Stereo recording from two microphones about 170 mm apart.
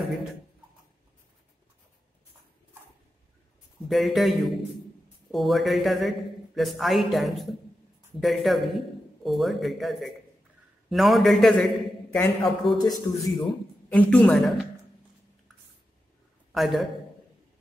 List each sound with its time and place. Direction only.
3.9 s a man's voice: centre (ahead or behind)
12.7 s a man's voice: 25° left (ahead or behind)
13.9 s a woman's voice: 5° left (ahead or behind)
16.5 s a man's voice: centre (ahead or behind)